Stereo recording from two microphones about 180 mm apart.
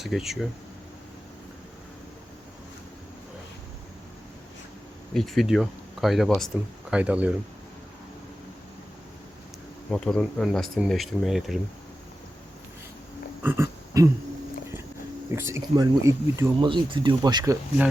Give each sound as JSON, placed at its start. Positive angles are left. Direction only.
{"t": 0.0, "sound": "speech", "side_deg": 0}
{"t": 5.1, "sound": "speech", "side_deg": 0}
{"t": 9.9, "sound": "speech", "side_deg": 5}
{"t": 13.4, "sound": "a sound", "side_deg": -15}
{"t": 15.4, "sound": "speech", "side_deg": -15}